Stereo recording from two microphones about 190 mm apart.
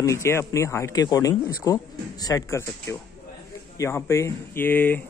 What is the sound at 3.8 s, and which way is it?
Speech, 15° left (ahead or behind).